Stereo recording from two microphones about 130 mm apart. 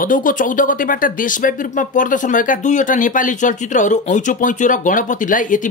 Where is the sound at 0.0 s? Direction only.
90° left.